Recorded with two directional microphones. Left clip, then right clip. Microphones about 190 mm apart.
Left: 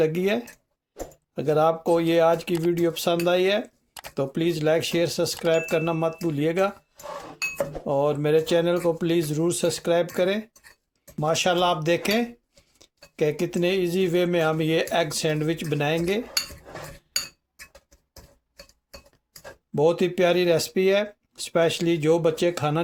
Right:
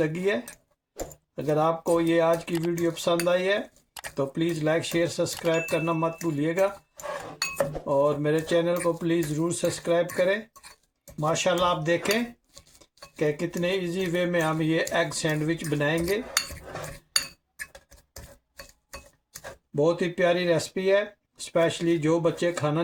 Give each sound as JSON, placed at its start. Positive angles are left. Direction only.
{"t": 0.0, "sound": "speech", "side_deg": 50}
{"t": 0.9, "sound": "speech", "side_deg": 0}
{"t": 1.4, "sound": "speech", "side_deg": 55}
{"t": 2.5, "sound": "speech", "side_deg": 0}
{"t": 2.7, "sound": "speech", "side_deg": 50}
{"t": 7.9, "sound": "speech", "side_deg": 55}
{"t": 19.7, "sound": "speech", "side_deg": 50}